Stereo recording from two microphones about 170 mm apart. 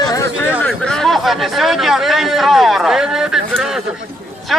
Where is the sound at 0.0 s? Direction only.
20° left (ahead or behind).